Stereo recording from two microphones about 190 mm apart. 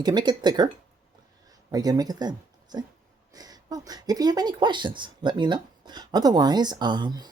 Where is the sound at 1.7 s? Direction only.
20° right (ahead or behind).